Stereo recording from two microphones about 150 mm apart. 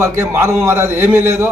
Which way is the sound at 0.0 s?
20° right (ahead or behind).